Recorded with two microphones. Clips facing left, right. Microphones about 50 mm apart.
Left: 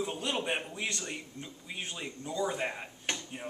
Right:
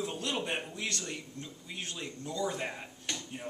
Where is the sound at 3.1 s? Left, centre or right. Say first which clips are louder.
Left 3 dB; left.